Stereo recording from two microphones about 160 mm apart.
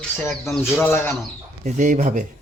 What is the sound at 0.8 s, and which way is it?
Speech, 10° left (ahead or behind).